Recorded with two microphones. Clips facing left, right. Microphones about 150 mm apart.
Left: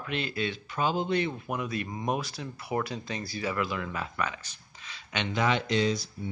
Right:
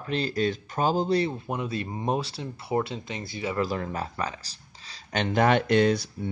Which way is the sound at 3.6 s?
40° right (ahead or behind).